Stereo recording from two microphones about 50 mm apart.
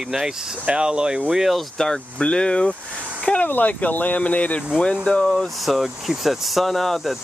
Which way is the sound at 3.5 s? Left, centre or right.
Left.